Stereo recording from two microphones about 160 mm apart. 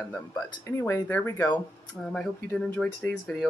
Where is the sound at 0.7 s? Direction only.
20° left (ahead or behind).